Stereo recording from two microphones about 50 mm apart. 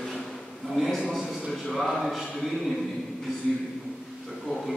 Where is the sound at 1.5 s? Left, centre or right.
Centre.